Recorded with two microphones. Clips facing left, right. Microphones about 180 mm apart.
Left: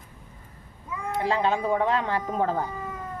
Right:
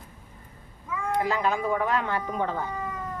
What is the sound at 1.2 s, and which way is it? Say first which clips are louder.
Speech: left 4 dB; 25° left (ahead or behind).